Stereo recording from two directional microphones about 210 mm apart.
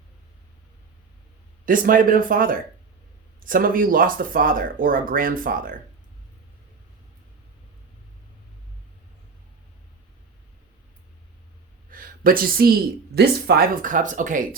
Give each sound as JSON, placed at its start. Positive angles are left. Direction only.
{"t": 1.6, "sound": "speech", "side_deg": -40}
{"t": 11.9, "sound": "speech", "side_deg": -40}